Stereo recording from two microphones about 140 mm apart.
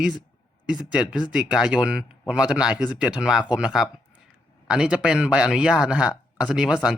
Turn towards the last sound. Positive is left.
turn(degrees=-5)  # may be behind; listen again after turning